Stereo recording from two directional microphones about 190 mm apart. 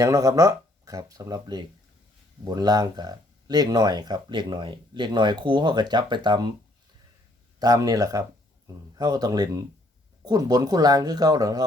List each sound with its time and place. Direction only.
0.0 s speech: 20° right (ahead or behind)
7.6 s speech: 20° right (ahead or behind)